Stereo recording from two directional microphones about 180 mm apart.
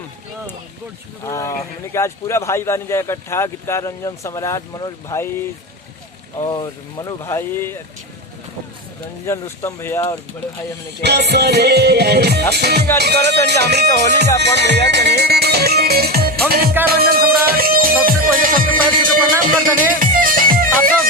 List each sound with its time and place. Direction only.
1.2 s a man's voice: 15° left (ahead or behind)
6.5 s speech: 25° left (ahead or behind)
7.3 s a man's voice: 15° left (ahead or behind)
9.2 s a man's voice: 15° left (ahead or behind)
11.0 s music: 65° right (ahead or behind); by 20.9 s 50° right (ahead or behind)